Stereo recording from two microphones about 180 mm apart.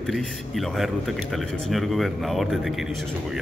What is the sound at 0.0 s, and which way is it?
Speech, centre (ahead or behind).